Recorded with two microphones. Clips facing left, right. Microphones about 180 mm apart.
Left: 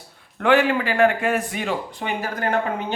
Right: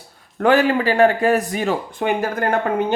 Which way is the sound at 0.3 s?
40° right (ahead or behind).